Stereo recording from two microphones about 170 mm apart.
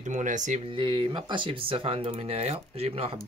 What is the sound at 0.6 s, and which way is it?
Speech, 30° right (ahead or behind).